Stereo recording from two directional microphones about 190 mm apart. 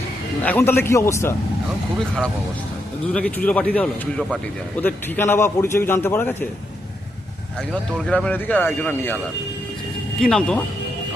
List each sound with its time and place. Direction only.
0.4 s a man's voice: 10° left (ahead or behind)
3.1 s a man's voice: 5° left (ahead or behind)
4.8 s a man's voice: 10° left (ahead or behind)
7.7 s a man's voice: 5° left (ahead or behind)